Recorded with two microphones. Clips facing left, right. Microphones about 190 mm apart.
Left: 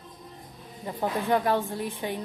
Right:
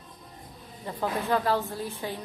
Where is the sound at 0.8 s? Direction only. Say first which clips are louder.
Left 1 dB; 20° left (ahead or behind).